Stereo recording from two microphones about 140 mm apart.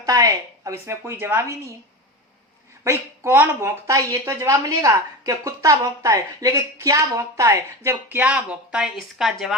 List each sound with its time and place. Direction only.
0.0 s a woman's voice: 25° right (ahead or behind)
2.8 s a woman's voice: 20° right (ahead or behind)
7.9 s speech: 10° right (ahead or behind)